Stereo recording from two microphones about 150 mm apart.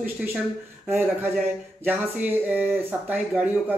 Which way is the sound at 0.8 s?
15° right (ahead or behind).